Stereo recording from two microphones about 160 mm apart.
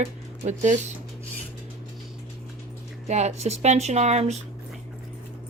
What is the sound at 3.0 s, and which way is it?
Speech, 45° right (ahead or behind).